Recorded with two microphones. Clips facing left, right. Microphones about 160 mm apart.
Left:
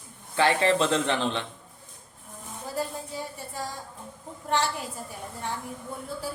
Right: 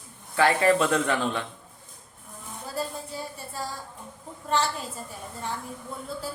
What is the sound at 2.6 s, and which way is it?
Music, 15° left (ahead or behind).